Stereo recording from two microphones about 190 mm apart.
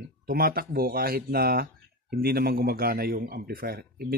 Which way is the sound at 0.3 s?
50° right (ahead or behind).